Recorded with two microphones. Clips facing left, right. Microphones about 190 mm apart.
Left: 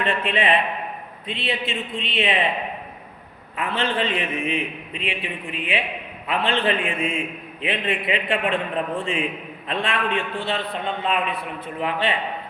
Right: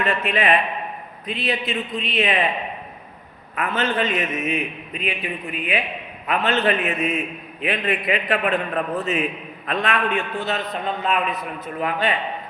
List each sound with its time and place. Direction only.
0.0 s a man's voice: 30° left (ahead or behind)
3.5 s a man's voice: 30° left (ahead or behind)